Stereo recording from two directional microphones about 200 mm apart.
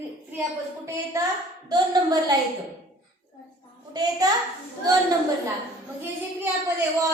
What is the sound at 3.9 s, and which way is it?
Speech, 20° right (ahead or behind).